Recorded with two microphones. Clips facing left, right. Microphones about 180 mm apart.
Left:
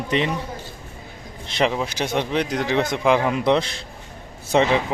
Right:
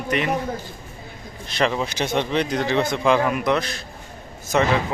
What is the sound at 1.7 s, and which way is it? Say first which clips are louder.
Speech: even; 10° left (ahead or behind).